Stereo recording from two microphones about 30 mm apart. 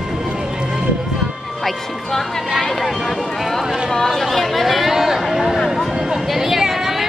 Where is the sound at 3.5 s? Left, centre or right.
Centre.